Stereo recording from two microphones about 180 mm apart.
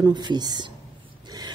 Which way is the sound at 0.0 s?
25° right (ahead or behind).